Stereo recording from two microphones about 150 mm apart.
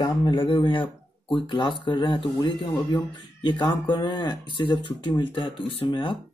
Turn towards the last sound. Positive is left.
turn(degrees=35)  # may be behind; listen again after turning